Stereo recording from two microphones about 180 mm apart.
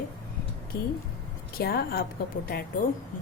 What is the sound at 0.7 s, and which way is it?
Speech, 55° left (ahead or behind).